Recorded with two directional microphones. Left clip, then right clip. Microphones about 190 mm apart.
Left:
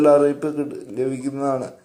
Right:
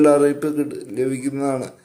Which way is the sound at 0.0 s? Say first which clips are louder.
Even; 20° right (ahead or behind).